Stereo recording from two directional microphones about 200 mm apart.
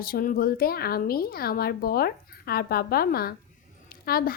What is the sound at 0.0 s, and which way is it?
A woman's voice, 45° left (ahead or behind).